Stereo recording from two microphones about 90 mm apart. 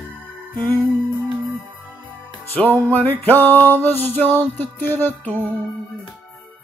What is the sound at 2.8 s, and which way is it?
Male singing, 20° left (ahead or behind).